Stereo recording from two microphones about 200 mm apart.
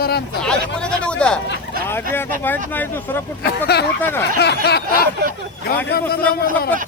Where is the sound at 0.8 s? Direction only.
5° left (ahead or behind).